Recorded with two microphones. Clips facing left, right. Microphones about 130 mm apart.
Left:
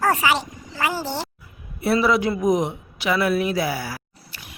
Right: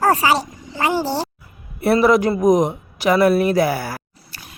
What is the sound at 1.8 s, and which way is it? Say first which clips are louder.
A man's voice: right 5 dB; 50° right (ahead or behind).